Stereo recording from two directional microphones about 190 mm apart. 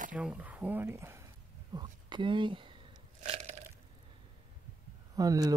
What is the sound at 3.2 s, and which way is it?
Biting, 35° right (ahead or behind).